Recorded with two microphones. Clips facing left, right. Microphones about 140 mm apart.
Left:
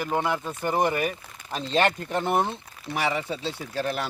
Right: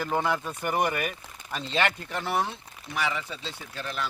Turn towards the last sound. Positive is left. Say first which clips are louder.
# left 6 dB
turn(degrees=40)  # may be behind; listen again after turning